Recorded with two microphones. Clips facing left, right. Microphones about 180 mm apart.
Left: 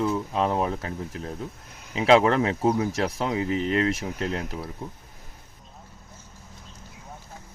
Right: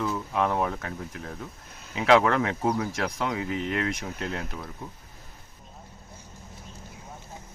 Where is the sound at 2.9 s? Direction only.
30° left (ahead or behind).